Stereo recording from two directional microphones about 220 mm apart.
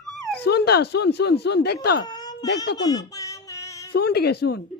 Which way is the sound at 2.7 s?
15° left (ahead or behind).